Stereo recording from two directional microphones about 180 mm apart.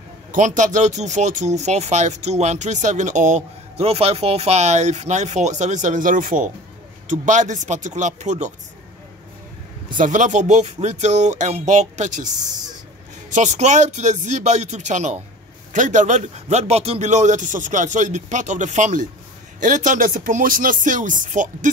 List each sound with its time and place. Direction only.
0.3 s a man's voice: 45° right (ahead or behind)
9.9 s a man's voice: 45° right (ahead or behind)